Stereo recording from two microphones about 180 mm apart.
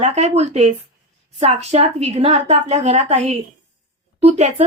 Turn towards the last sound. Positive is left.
turn(degrees=-40)  # may be behind; listen again after turning